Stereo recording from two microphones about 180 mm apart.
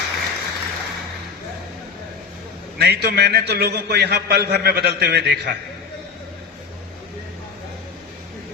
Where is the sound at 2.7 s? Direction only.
65° right (ahead or behind).